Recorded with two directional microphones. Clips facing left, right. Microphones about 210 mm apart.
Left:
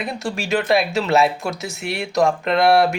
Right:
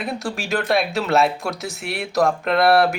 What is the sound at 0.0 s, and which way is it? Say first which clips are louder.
Speech: left 1 dB; centre (ahead or behind).